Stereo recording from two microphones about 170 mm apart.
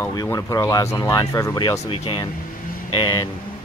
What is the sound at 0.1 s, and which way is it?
Speech, 20° left (ahead or behind).